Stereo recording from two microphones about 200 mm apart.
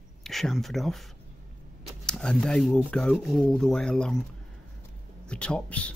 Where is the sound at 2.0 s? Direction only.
5° left (ahead or behind).